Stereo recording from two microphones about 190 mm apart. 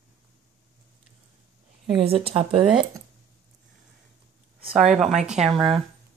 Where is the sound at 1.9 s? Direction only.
30° right (ahead or behind).